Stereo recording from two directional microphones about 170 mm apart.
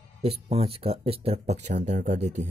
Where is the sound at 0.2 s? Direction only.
35° right (ahead or behind).